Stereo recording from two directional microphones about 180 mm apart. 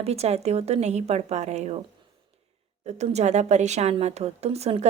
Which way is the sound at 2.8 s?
40° right (ahead or behind).